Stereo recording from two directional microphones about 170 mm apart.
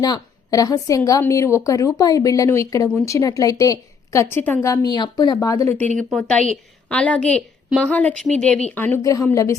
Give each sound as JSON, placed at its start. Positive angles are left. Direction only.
{"t": 0.0, "sound": "a woman's voice", "side_deg": 20}